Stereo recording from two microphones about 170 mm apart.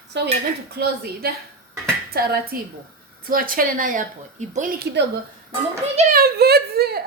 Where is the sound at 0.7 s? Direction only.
70° right (ahead or behind).